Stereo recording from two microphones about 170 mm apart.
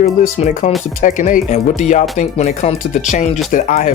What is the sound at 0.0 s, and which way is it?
Speech, 40° left (ahead or behind).